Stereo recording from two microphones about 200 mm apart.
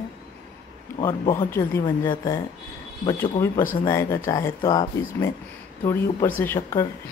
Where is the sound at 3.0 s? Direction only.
15° left (ahead or behind).